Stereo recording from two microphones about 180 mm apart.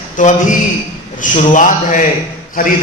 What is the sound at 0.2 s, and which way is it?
A man's voice, 45° left (ahead or behind).